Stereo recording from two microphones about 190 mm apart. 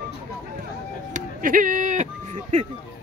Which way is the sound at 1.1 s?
45° right (ahead or behind).